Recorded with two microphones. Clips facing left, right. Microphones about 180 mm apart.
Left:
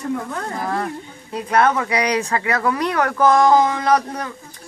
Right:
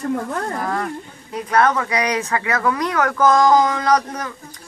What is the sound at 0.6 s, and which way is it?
Speech, 10° left (ahead or behind).